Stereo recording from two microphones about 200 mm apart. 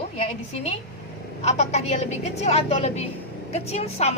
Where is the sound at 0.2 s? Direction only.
30° left (ahead or behind).